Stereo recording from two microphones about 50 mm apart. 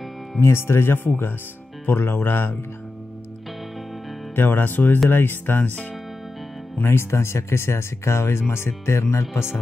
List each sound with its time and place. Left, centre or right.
0.4 s speech: left
4.4 s speech: left
6.8 s speech: left